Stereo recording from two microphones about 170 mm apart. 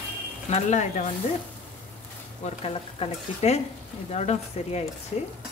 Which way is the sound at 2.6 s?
35° left (ahead or behind).